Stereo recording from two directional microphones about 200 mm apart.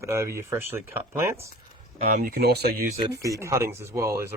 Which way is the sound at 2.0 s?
45° right (ahead or behind).